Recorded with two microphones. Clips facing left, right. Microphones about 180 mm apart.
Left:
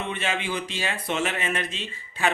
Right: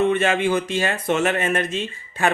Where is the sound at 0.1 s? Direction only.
50° right (ahead or behind).